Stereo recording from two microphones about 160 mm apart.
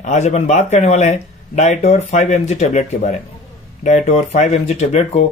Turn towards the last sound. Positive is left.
turn(degrees=45)  # may be behind; listen again after turning